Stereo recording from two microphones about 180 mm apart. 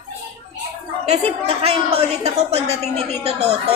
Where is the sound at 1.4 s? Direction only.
35° right (ahead or behind).